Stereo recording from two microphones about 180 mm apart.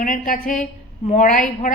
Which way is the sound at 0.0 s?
45° left (ahead or behind).